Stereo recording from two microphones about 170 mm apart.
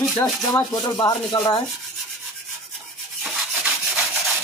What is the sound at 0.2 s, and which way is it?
Speech, 20° left (ahead or behind).